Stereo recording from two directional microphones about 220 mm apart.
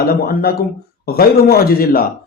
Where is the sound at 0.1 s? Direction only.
45° left (ahead or behind).